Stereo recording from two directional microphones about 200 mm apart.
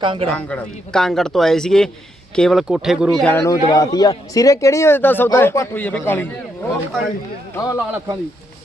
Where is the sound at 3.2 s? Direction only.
10° left (ahead or behind).